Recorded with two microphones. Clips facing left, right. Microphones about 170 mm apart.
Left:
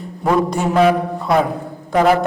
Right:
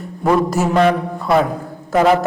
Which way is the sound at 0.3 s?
5° right (ahead or behind).